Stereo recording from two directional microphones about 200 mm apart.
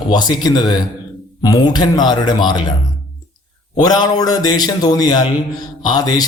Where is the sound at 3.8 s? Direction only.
20° left (ahead or behind).